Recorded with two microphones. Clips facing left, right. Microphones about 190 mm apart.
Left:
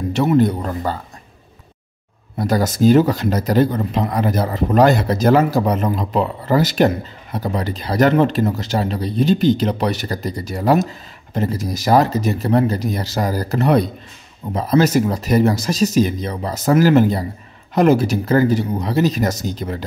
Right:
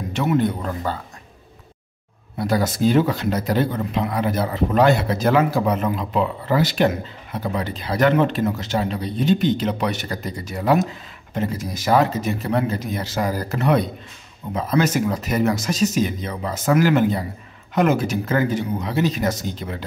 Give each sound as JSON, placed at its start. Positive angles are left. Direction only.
{"t": 0.1, "sound": "speech", "side_deg": 35}
{"t": 2.3, "sound": "speech", "side_deg": 40}